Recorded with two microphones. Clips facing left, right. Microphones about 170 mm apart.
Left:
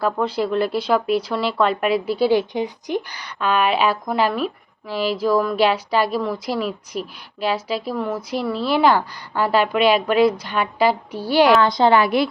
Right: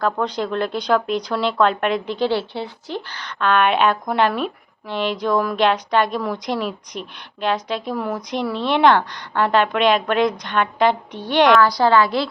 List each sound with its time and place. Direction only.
0.0 s speech: 5° left (ahead or behind)
11.6 s a woman's voice: 20° left (ahead or behind)